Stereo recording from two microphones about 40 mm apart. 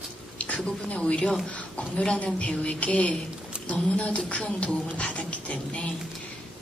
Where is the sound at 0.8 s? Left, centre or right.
Left.